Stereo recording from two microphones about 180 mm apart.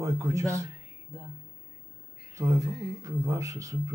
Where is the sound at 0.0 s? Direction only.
15° right (ahead or behind).